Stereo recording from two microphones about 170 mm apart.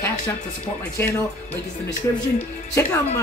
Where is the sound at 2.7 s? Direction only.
15° left (ahead or behind).